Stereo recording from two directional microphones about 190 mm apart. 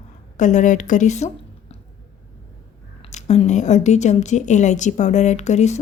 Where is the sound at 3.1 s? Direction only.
35° left (ahead or behind).